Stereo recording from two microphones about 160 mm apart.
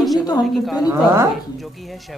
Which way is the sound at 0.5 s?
Centre (ahead or behind).